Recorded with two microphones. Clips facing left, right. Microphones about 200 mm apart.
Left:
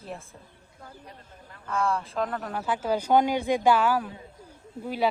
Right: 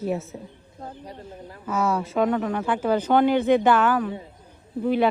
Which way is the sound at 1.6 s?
5° right (ahead or behind).